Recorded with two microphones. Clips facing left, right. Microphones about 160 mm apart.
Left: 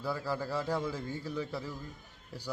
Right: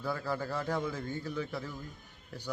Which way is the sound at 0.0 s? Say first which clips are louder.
Even; 5° left (ahead or behind).